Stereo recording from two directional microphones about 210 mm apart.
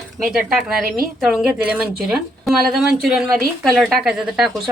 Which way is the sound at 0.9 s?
45° right (ahead or behind).